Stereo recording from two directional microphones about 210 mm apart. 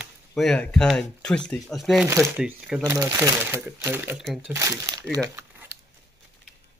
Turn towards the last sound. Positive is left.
turn(degrees=-15)  # may be behind; listen again after turning